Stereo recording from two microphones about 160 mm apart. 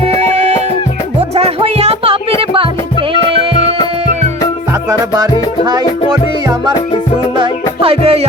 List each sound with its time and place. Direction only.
0.2 s music: 45° right (ahead or behind)
4.9 s music: 25° right (ahead or behind)
7.3 s music: 35° right (ahead or behind)